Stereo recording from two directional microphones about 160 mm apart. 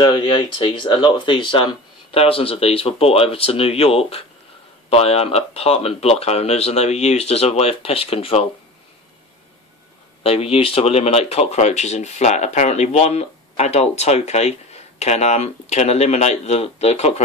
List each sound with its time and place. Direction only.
0.0 s speech: 30° left (ahead or behind)
10.2 s speech: 35° left (ahead or behind)